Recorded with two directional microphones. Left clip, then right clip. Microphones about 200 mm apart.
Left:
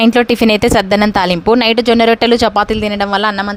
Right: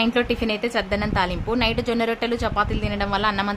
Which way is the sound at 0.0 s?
55° left (ahead or behind).